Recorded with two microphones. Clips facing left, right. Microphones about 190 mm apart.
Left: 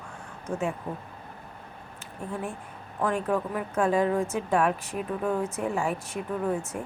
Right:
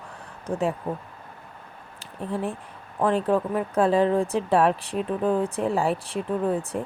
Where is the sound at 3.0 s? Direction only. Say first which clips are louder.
Right 5 dB; 30° right (ahead or behind).